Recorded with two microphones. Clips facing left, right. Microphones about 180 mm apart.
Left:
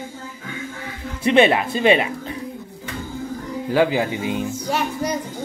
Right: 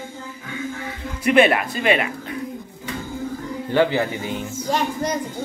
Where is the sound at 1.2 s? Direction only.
25° left (ahead or behind).